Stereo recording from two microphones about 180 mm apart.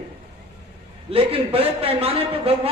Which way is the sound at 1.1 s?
30° right (ahead or behind).